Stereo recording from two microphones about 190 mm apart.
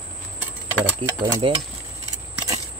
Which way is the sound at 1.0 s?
25° right (ahead or behind).